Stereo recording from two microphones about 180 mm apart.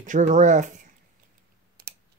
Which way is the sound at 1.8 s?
60° right (ahead or behind).